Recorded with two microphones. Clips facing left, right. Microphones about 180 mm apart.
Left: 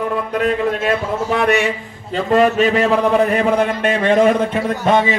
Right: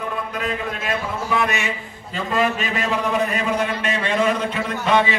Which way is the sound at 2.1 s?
55° left (ahead or behind).